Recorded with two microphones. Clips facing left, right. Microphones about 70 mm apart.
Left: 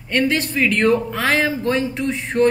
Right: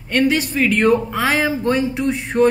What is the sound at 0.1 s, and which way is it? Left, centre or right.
A woman's voice, centre.